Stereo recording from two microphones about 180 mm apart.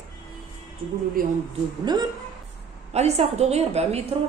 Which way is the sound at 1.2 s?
50° right (ahead or behind).